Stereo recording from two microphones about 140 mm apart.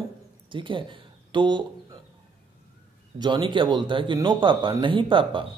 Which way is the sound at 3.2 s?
35° right (ahead or behind).